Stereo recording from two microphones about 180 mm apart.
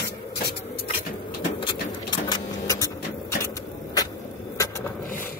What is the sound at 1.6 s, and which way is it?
Vehicle, 25° left (ahead or behind).